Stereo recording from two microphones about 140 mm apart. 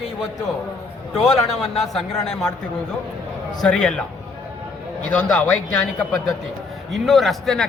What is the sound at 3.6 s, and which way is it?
Speech, 5° left (ahead or behind).